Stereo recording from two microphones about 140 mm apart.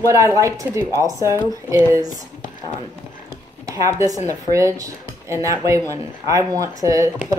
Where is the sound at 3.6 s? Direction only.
20° right (ahead or behind).